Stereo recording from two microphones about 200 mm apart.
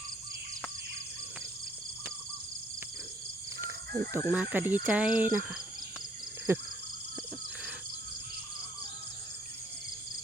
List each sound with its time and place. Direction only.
3.9 s speech: 15° right (ahead or behind)